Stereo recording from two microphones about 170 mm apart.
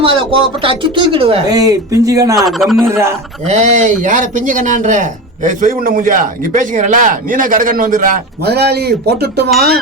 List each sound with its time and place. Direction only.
0.0 s speech: 30° right (ahead or behind)
1.5 s speech: 20° right (ahead or behind)
2.3 s speech: centre (ahead or behind)
2.8 s a man's voice: 15° right (ahead or behind)
3.4 s speech: 45° right (ahead or behind); by 9.4 s 75° right (ahead or behind)